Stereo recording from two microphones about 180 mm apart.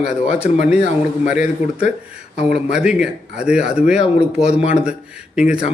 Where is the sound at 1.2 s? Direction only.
40° left (ahead or behind).